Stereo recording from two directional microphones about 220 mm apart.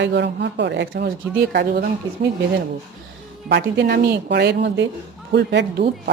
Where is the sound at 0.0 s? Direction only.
50° right (ahead or behind).